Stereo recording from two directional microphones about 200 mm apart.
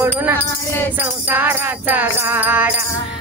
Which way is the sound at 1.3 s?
10° right (ahead or behind).